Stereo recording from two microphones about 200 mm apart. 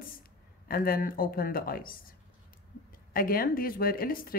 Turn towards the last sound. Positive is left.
turn(degrees=45)  # may be behind; listen again after turning